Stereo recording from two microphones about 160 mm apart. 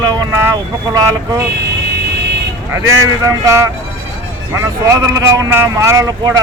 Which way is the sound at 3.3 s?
20° right (ahead or behind).